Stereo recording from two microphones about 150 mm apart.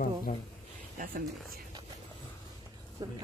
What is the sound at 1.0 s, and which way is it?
Speech, 65° right (ahead or behind).